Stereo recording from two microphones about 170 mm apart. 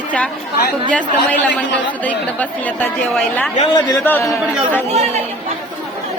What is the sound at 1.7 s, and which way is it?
Speech, 10° left (ahead or behind).